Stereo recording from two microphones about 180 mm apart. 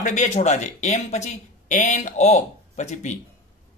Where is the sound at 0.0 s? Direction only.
45° left (ahead or behind).